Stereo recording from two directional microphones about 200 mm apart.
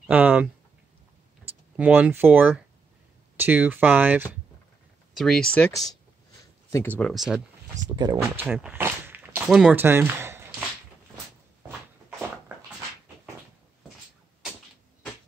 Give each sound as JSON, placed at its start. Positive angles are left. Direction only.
{"t": 0.0, "sound": "speech", "side_deg": -10}
{"t": 1.8, "sound": "speech", "side_deg": -5}
{"t": 5.1, "sound": "speech", "side_deg": 0}
{"t": 5.7, "sound": "speech", "side_deg": 15}
{"t": 7.0, "sound": "speech", "side_deg": 0}
{"t": 7.7, "sound": "speech", "side_deg": -20}